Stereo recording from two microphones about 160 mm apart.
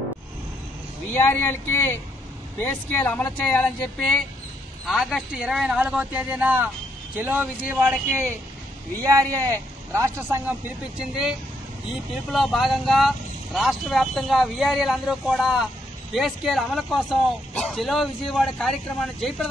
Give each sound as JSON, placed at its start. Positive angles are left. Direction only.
{"t": 1.1, "sound": "speech", "side_deg": 10}